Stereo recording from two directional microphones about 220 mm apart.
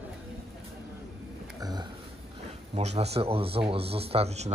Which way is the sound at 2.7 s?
30° right (ahead or behind).